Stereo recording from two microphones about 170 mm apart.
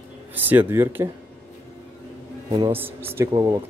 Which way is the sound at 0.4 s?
10° right (ahead or behind).